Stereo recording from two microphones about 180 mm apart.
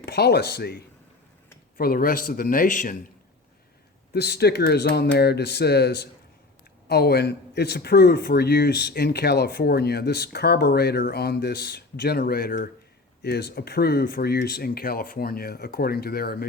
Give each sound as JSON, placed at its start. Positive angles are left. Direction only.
{"t": 0.0, "sound": "speech", "side_deg": 65}
{"t": 1.8, "sound": "speech", "side_deg": 55}
{"t": 4.1, "sound": "speech", "side_deg": 65}